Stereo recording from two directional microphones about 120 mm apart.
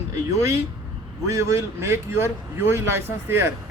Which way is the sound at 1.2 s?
25° right (ahead or behind).